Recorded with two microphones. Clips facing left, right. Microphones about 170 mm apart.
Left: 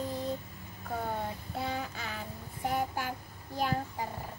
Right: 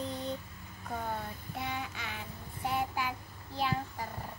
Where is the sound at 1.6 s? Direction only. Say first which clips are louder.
Left 2 dB; 40° left (ahead or behind).